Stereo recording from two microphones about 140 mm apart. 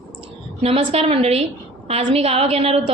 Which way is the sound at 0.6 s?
45° right (ahead or behind).